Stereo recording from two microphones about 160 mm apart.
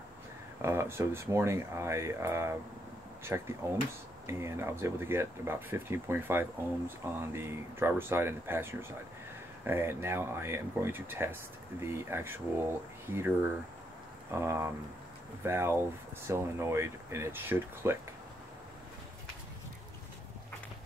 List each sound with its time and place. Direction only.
0.6 s speech: 15° right (ahead or behind)
14.3 s speech: 15° right (ahead or behind)